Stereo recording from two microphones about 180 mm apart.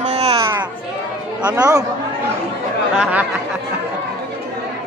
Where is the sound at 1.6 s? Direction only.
20° right (ahead or behind).